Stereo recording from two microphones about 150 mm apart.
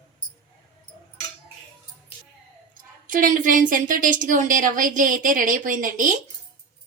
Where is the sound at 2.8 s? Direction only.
65° right (ahead or behind).